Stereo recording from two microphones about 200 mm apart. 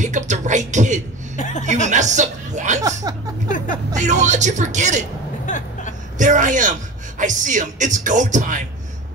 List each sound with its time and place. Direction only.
0.0 s speech: 40° right (ahead or behind)
1.3 s chuckle: 40° left (ahead or behind)
1.6 s speech: 35° right (ahead or behind)
2.8 s speech: 15° right (ahead or behind)
3.4 s music: 40° left (ahead or behind)
3.9 s speech: 35° right (ahead or behind)
5.5 s vehicle: 40° left (ahead or behind)
6.1 s speech: 40° right (ahead or behind)